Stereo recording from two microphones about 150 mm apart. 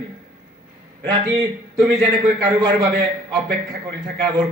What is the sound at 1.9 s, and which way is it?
A man's voice, 25° right (ahead or behind).